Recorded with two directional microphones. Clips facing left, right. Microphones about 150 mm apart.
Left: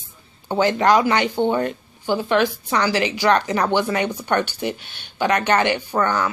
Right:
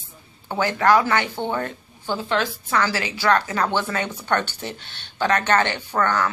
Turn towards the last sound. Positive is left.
turn(degrees=10)  # may be behind; listen again after turning